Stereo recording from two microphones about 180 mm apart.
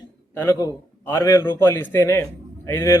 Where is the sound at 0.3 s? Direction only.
15° left (ahead or behind).